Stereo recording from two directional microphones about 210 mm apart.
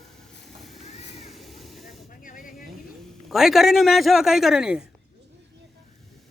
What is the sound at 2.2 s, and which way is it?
Snake, 40° left (ahead or behind).